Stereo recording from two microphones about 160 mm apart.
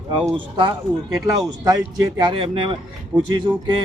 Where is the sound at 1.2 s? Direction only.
25° right (ahead or behind).